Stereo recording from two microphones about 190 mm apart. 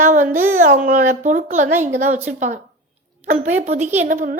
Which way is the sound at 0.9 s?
40° right (ahead or behind).